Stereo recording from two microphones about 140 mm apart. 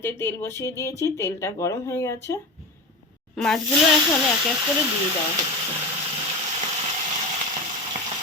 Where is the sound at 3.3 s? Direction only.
5° left (ahead or behind).